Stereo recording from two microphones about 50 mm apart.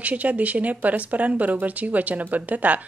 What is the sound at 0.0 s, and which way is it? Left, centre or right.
Speech, right.